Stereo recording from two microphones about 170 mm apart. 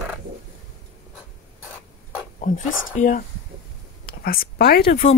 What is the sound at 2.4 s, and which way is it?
Speech, 50° left (ahead or behind).